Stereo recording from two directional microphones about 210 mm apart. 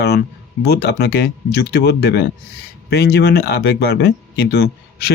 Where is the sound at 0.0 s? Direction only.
50° left (ahead or behind).